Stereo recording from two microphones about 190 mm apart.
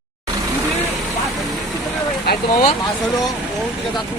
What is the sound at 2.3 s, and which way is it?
Vehicle, 55° left (ahead or behind).